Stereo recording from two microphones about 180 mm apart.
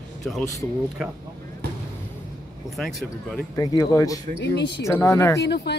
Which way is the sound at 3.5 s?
20° left (ahead or behind).